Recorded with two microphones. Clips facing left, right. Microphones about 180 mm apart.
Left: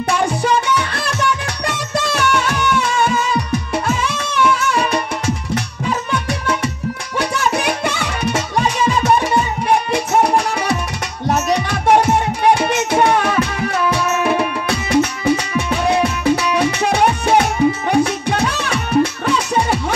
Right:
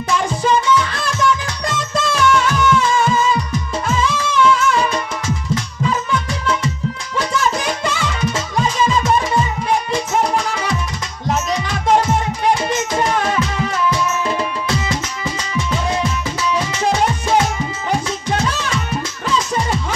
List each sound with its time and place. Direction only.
0.1 s music: 65° left (ahead or behind)